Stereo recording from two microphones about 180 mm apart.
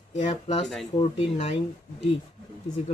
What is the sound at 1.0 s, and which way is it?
Speech, 35° left (ahead or behind).